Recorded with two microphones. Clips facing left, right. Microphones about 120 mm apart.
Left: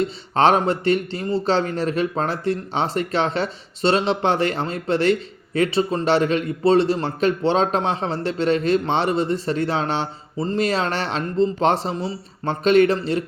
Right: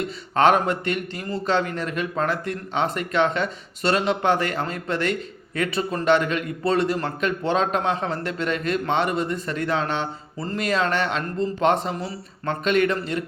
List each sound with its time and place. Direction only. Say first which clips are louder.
0.3 s a man's voice: left 1 dB; 30° left (ahead or behind)